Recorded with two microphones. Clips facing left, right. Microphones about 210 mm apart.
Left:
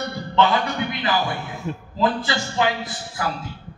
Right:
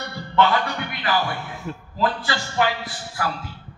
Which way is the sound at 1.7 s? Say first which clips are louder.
Left 2 dB; 20° left (ahead or behind).